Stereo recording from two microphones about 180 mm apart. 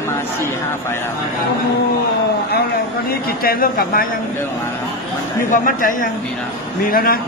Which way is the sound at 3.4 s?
55° left (ahead or behind).